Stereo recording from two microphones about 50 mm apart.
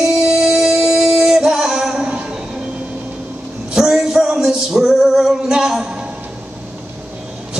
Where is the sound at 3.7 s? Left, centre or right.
Centre.